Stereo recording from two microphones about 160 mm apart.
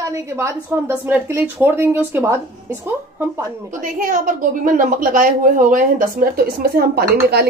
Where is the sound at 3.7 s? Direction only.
60° right (ahead or behind).